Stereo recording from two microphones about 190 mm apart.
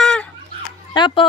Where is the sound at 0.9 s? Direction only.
25° left (ahead or behind).